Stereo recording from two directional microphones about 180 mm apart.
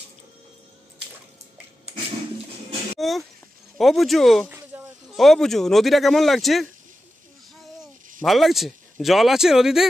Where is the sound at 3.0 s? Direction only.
Centre (ahead or behind).